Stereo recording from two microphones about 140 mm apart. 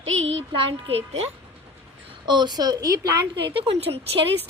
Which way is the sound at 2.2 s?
30° right (ahead or behind).